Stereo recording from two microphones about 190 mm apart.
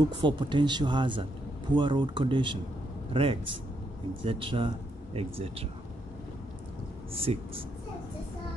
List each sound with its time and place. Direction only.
0.2 s speech: 25° right (ahead or behind)
7.2 s speech: 30° right (ahead or behind)